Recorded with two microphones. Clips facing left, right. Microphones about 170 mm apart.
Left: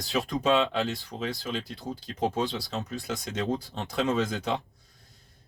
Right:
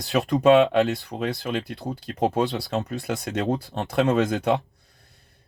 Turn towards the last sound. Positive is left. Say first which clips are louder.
# right 6 dB
turn(degrees=-60)  # may be behind; listen again after turning